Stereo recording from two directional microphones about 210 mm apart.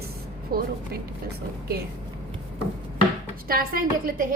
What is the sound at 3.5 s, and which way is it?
Speech, 45° right (ahead or behind).